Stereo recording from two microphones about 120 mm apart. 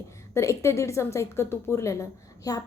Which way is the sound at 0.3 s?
25° left (ahead or behind).